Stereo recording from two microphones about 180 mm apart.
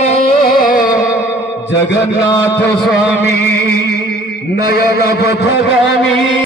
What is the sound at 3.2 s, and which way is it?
Music, 65° left (ahead or behind).